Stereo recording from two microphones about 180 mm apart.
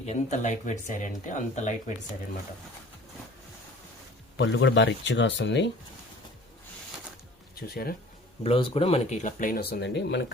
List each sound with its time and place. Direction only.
0.0 s speech: 40° left (ahead or behind)
4.4 s speech: 85° left
7.5 s speech: 55° left (ahead or behind)
8.4 s speech: 30° left (ahead or behind); by 10.3 s 75° left (ahead or behind)